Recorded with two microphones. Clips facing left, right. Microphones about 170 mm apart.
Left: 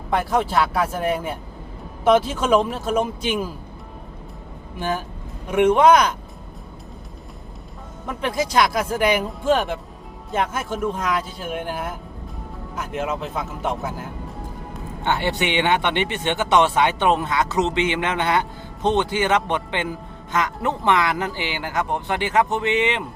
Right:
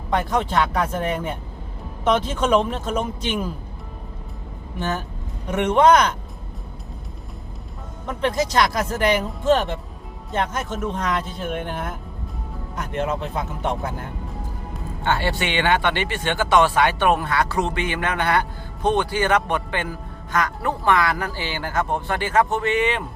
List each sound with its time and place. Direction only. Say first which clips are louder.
0.2 s speech: left 2 dB; 5° left (ahead or behind)
4.8 s speech: left 1 dB; 10° left (ahead or behind)
8.0 s speech: right 2 dB; 5° left (ahead or behind)
15.0 s a man's voice: left 1 dB; 20° left (ahead or behind)